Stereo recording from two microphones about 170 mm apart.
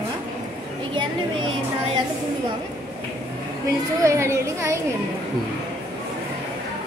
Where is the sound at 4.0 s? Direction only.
15° right (ahead or behind).